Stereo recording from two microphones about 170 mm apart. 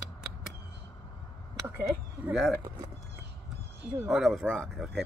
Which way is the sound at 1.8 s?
15° right (ahead or behind).